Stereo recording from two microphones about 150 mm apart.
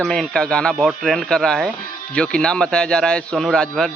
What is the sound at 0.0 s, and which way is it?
A man's voice, centre (ahead or behind).